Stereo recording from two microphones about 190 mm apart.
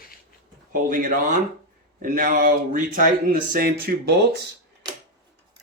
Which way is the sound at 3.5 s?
55° right (ahead or behind).